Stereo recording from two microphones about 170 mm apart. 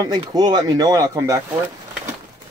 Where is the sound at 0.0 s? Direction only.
20° right (ahead or behind).